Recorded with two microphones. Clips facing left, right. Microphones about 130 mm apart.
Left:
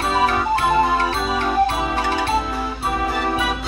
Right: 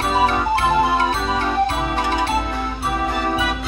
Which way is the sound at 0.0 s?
5° right (ahead or behind).